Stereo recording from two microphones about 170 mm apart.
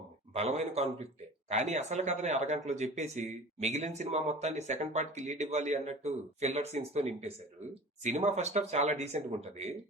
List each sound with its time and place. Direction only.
0.3 s speech: 40° right (ahead or behind)